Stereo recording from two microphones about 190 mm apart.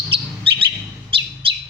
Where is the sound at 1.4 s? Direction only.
30° right (ahead or behind).